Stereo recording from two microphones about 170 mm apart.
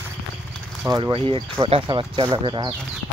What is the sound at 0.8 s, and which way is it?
Speech, 25° right (ahead or behind).